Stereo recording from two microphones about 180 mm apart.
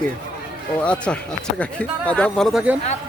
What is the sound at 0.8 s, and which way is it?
Speech, 5° left (ahead or behind).